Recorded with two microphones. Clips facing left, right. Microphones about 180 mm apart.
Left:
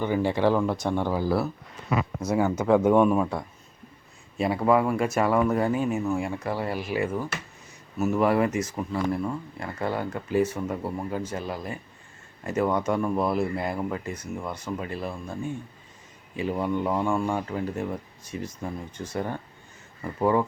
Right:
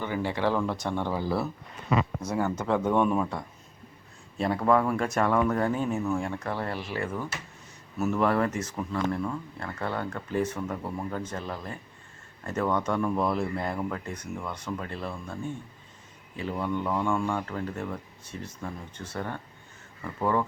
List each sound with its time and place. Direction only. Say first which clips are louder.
0.0 s speech: left 5 dB; 15° left (ahead or behind)